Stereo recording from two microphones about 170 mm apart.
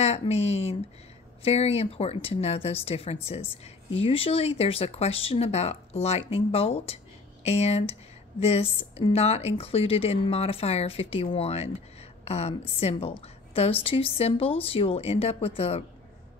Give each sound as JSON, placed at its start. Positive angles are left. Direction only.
{"t": 0.0, "sound": "speech", "side_deg": 40}